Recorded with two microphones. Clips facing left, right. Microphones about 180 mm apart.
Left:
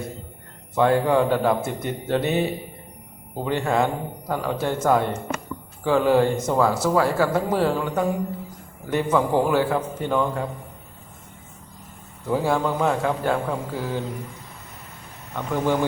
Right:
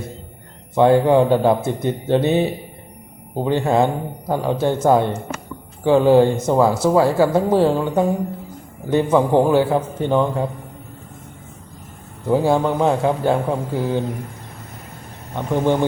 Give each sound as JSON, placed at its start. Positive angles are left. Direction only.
{"t": 0.8, "sound": "a man's voice", "side_deg": -25}
{"t": 12.3, "sound": "a man's voice", "side_deg": -25}
{"t": 15.3, "sound": "a man's voice", "side_deg": -25}